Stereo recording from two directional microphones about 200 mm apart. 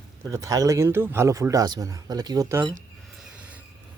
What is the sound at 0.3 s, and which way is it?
Speech, 15° right (ahead or behind).